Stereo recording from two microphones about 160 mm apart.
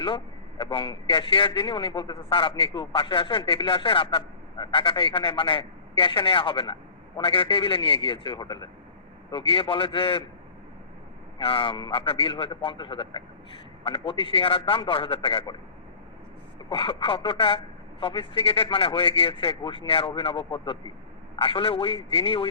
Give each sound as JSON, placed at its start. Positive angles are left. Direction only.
{"t": 0.6, "sound": "a man's voice", "side_deg": 30}
{"t": 11.3, "sound": "a man's voice", "side_deg": 30}
{"t": 16.6, "sound": "a man's voice", "side_deg": 35}